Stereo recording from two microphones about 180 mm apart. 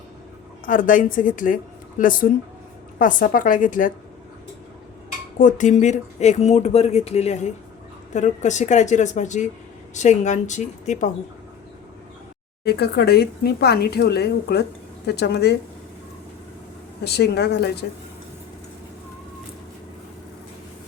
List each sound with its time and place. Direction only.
0.6 s a woman's voice: 50° left (ahead or behind)
5.4 s speech: 45° left (ahead or behind)
12.6 s a woman's voice: 60° left (ahead or behind)
17.0 s a woman's voice: 65° left (ahead or behind)